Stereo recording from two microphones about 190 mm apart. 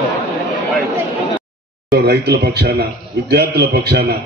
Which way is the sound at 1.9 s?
55° right (ahead or behind).